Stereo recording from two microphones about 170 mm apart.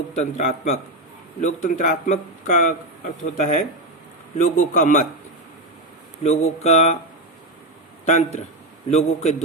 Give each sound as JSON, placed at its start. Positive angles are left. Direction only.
{"t": 0.2, "sound": "a man's voice", "side_deg": 45}
{"t": 6.2, "sound": "speech", "side_deg": 40}
{"t": 8.0, "sound": "a man's voice", "side_deg": 45}